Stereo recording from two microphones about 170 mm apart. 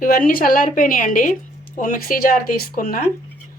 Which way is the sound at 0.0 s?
55° left (ahead or behind).